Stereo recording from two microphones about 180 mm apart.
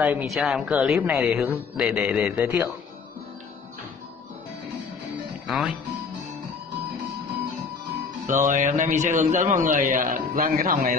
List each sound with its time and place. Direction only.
0.0 s speech: 10° right (ahead or behind)
5.5 s speech: centre (ahead or behind)
8.3 s a man's voice: 45° right (ahead or behind)